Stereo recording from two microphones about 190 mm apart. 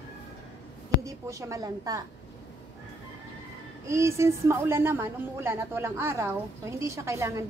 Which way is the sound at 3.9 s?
15° right (ahead or behind).